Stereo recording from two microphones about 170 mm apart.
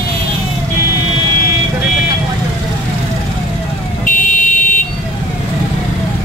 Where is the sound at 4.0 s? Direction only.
50° left (ahead or behind).